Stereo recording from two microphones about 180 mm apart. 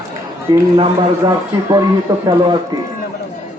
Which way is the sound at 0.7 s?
25° right (ahead or behind).